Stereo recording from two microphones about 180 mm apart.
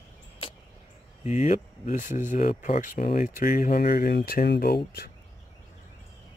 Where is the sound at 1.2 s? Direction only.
40° left (ahead or behind); by 5.1 s 60° left (ahead or behind).